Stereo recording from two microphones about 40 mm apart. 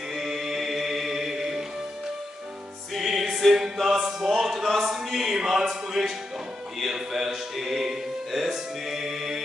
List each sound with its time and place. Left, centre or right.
0.1 s music: centre
2.9 s music: centre
4.2 s a sound: centre
6.8 s music: centre